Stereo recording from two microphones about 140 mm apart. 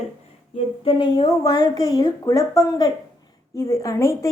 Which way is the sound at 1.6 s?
25° left (ahead or behind).